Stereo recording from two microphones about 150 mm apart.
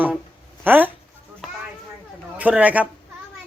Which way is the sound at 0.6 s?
10° right (ahead or behind).